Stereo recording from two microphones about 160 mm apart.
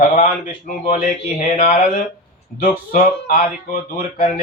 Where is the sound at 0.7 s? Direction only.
50° left (ahead or behind).